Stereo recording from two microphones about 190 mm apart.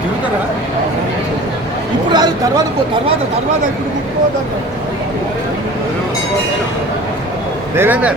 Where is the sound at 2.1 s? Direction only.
20° right (ahead or behind).